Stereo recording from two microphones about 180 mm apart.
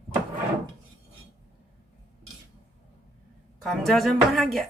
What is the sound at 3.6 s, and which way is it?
Speech, centre (ahead or behind).